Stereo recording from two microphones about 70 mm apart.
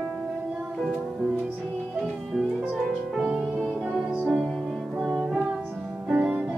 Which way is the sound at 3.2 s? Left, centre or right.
Right.